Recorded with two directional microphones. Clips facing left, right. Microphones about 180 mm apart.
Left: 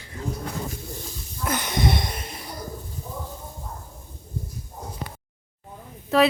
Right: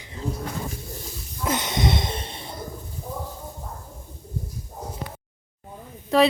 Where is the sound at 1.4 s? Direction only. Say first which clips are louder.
Even; 20° right (ahead or behind).